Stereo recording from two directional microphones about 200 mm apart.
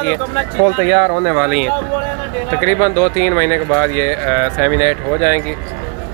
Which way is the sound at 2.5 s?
10° left (ahead or behind).